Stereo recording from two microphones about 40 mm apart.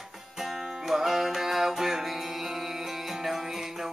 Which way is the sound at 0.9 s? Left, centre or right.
Centre.